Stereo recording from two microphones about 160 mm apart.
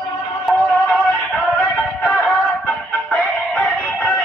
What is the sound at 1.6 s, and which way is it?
Music, 5° left (ahead or behind).